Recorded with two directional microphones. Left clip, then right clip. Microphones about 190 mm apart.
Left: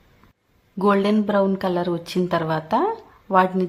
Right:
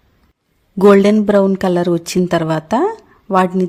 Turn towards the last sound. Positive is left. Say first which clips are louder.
# right 4 dB
turn(degrees=-45)  # may be behind; listen again after turning